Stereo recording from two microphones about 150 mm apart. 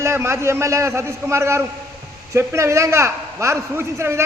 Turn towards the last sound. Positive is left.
turn(degrees=-20)  # may be behind; listen again after turning